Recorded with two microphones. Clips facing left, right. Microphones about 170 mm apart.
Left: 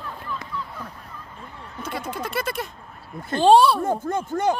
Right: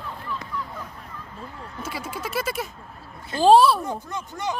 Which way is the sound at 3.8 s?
50° left (ahead or behind).